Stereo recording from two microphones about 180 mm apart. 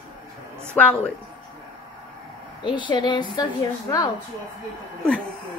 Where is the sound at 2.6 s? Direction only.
25° left (ahead or behind).